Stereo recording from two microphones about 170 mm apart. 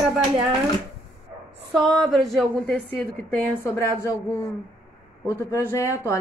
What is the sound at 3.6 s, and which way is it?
Speech, 15° left (ahead or behind).